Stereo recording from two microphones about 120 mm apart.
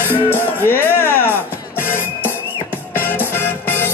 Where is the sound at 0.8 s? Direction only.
20° left (ahead or behind).